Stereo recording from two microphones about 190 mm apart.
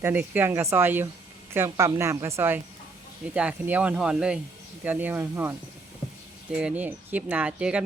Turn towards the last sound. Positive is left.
turn(degrees=-5)  # may be behind; listen again after turning